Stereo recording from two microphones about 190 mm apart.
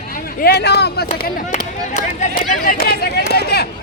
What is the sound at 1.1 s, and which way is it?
Speech, 45° left (ahead or behind).